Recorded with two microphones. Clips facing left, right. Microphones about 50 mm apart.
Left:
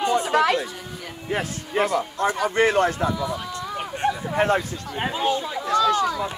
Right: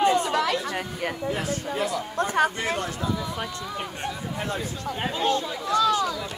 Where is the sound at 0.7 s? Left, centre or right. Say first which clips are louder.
Right 6 dB; right.